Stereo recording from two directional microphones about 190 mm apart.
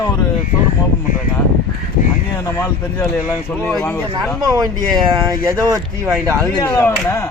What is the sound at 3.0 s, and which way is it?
Speech, centre (ahead or behind).